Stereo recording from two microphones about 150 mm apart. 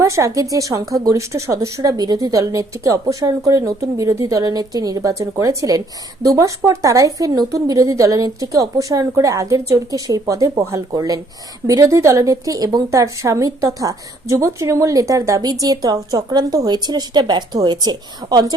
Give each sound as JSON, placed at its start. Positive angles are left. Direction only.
{"t": 0.0, "sound": "a woman's voice", "side_deg": -20}